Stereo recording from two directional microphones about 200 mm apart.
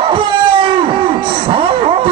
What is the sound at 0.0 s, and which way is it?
Wail, 25° right (ahead or behind).